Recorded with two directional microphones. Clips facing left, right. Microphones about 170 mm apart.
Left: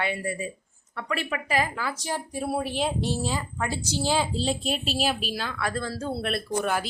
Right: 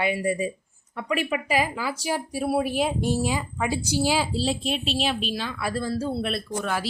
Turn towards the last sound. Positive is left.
turn(degrees=0)  # may be behind; listen again after turning